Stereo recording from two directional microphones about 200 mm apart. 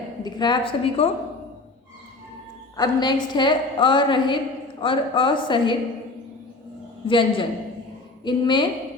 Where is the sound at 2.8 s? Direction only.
20° left (ahead or behind).